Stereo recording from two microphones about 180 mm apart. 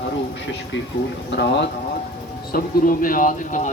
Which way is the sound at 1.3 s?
70° left (ahead or behind).